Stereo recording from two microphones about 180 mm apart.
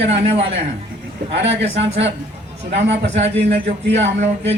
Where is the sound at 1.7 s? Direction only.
35° right (ahead or behind).